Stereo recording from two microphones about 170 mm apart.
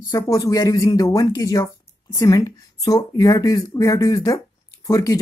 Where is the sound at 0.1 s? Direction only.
20° left (ahead or behind).